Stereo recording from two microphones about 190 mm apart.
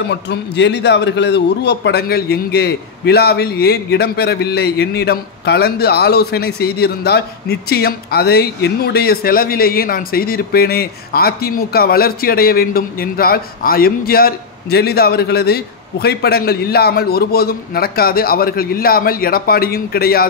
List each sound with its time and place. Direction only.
0.1 s a man's voice: 65° left (ahead or behind)